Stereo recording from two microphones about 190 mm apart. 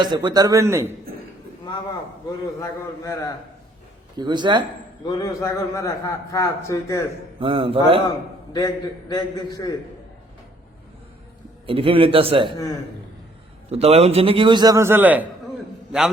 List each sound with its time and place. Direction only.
0.0 s a man's voice: 25° right (ahead or behind)
2.6 s a man's voice: 15° left (ahead or behind)
4.2 s a man's voice: 25° right (ahead or behind)
5.0 s a man's voice: 20° left (ahead or behind)
7.3 s a man's voice: 25° right (ahead or behind)
8.5 s a man's voice: 20° left (ahead or behind)
11.6 s a man's voice: 30° right (ahead or behind)
13.7 s a man's voice: 30° right (ahead or behind); by 15.3 s 10° right (ahead or behind)